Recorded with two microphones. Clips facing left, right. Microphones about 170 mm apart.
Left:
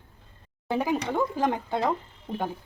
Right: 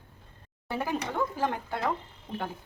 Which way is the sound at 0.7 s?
15° left (ahead or behind).